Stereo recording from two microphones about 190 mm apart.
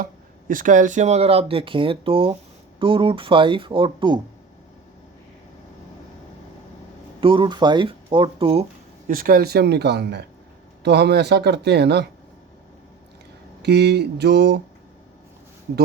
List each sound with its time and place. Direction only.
0.0 s speech: 45° right (ahead or behind); by 4.2 s 25° right (ahead or behind)
7.2 s speech: 25° right (ahead or behind)
9.0 s speech: 45° right (ahead or behind)
13.6 s speech: 60° right (ahead or behind)